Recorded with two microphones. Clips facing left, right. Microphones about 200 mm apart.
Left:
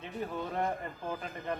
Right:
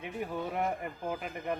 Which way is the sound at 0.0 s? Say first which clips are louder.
Right 1 dB; 15° right (ahead or behind).